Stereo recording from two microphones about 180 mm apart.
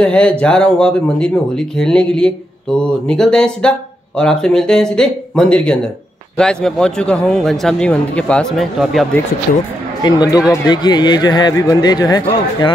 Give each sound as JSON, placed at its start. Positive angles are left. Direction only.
{"t": 0.0, "sound": "speech", "side_deg": 5}
{"t": 10.0, "sound": "speech", "side_deg": 20}